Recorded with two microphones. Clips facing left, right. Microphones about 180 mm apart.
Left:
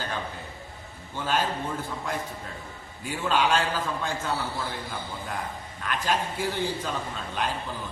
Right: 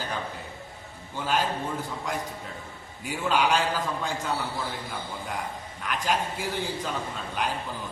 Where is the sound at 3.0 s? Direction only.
10° right (ahead or behind).